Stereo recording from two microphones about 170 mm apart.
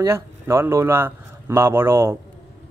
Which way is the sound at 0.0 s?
15° right (ahead or behind).